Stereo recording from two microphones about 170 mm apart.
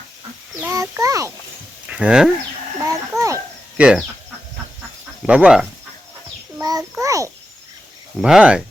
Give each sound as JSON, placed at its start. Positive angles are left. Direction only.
{"t": 0.6, "sound": "a child's voice", "side_deg": -15}
{"t": 1.9, "sound": "speech", "side_deg": -5}
{"t": 2.8, "sound": "a child's voice", "side_deg": -15}
{"t": 3.8, "sound": "speech", "side_deg": -5}
{"t": 5.2, "sound": "speech", "side_deg": -5}
{"t": 6.6, "sound": "a child's voice", "side_deg": -20}
{"t": 8.2, "sound": "speech", "side_deg": -5}